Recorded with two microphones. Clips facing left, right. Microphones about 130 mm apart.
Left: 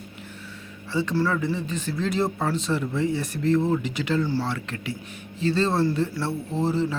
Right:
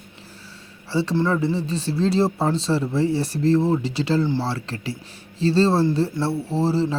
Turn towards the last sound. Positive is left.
turn(degrees=-35)  # may be behind; listen again after turning